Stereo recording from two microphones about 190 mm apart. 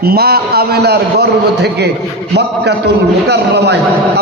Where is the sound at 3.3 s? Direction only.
60° right (ahead or behind).